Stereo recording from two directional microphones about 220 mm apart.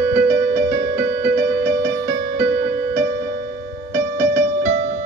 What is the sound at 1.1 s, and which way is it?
Music, 45° right (ahead or behind).